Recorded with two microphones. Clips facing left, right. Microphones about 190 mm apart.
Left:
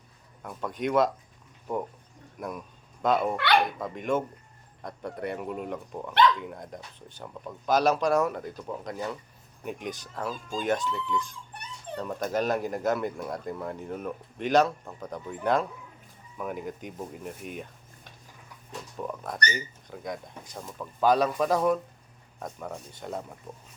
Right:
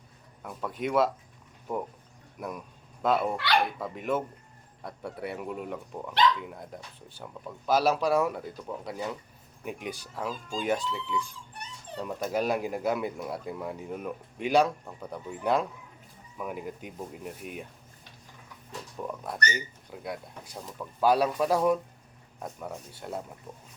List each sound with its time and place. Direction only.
0.4 s speech: 5° right (ahead or behind)
2.4 s speech: 10° right (ahead or behind)
3.3 s speech: 60° left (ahead or behind)
3.8 s speech: 5° right (ahead or behind)
18.9 s speech: 5° right (ahead or behind)